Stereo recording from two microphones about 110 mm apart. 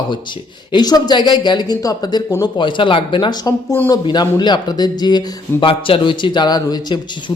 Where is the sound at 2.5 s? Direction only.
50° left (ahead or behind).